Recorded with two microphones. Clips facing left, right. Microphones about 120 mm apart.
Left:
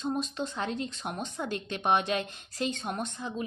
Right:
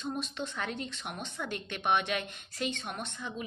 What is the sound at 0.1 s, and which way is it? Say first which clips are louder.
A woman's voice: left 3 dB; 35° left (ahead or behind).